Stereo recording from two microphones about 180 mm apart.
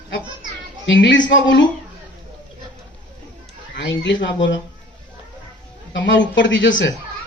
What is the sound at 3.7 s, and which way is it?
Speech, 75° left (ahead or behind).